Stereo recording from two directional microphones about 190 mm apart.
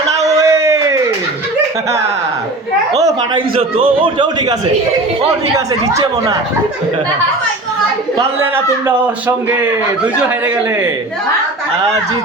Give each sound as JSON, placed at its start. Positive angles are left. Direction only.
{"t": 0.3, "sound": "a sound", "side_deg": -15}
{"t": 2.9, "sound": "a man's voice", "side_deg": -20}
{"t": 3.5, "sound": "a man's voice", "side_deg": -30}
{"t": 5.5, "sound": "speech", "side_deg": -15}